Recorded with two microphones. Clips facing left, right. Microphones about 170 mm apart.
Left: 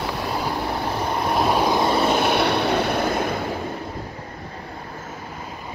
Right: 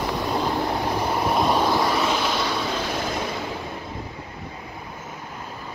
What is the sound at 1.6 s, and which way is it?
Vehicle, 15° left (ahead or behind).